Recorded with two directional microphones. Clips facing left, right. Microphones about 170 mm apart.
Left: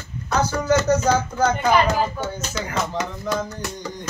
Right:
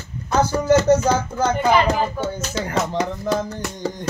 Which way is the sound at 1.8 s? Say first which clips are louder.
Right 1 dB; 30° right (ahead or behind).